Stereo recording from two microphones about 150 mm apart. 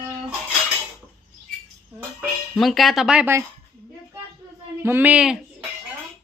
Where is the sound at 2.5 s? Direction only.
Centre (ahead or behind).